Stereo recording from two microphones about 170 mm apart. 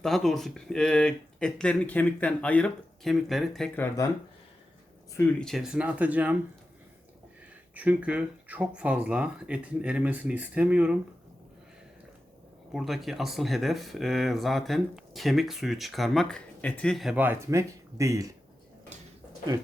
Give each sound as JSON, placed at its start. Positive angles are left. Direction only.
{"t": 0.0, "sound": "speech", "side_deg": 0}
{"t": 3.8, "sound": "speech", "side_deg": 20}
{"t": 5.4, "sound": "speech", "side_deg": 0}
{"t": 7.7, "sound": "speech", "side_deg": -10}
{"t": 12.7, "sound": "speech", "side_deg": 0}